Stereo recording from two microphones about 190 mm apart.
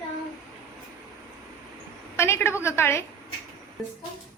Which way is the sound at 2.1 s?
15° left (ahead or behind).